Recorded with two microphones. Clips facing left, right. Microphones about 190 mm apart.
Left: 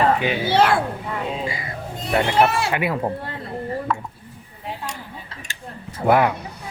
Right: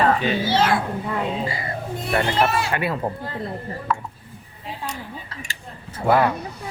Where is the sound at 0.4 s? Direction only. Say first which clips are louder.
Left 5 dB; 60° left (ahead or behind).